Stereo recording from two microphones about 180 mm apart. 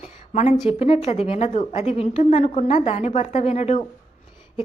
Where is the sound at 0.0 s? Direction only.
35° left (ahead or behind).